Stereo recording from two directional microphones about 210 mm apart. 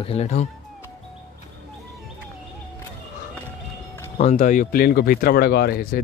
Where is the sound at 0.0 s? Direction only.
30° left (ahead or behind).